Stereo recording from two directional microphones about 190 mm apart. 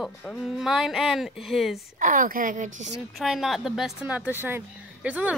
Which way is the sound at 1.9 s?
45° right (ahead or behind).